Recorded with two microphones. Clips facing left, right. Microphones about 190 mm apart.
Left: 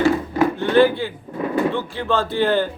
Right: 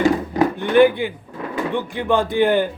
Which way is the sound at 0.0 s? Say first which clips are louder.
Even; 15° right (ahead or behind).